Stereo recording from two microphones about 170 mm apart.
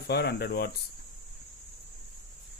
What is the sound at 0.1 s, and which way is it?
Speech, 70° left (ahead or behind).